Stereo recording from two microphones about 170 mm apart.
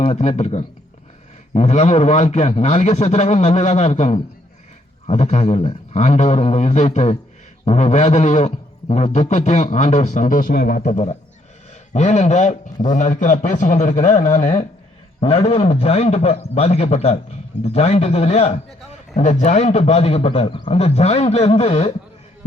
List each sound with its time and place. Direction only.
0.0 s a man's voice: 40° left (ahead or behind)
11.7 s a man's voice: 40° left (ahead or behind)
15.2 s a man's voice: 35° left (ahead or behind)